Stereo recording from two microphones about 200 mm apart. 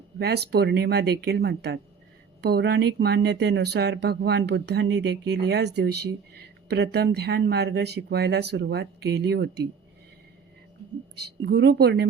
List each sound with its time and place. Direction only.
0.2 s speech: 55° right (ahead or behind)
11.1 s speech: 55° right (ahead or behind)